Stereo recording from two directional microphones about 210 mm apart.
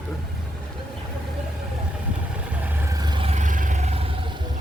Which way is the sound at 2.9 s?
20° right (ahead or behind).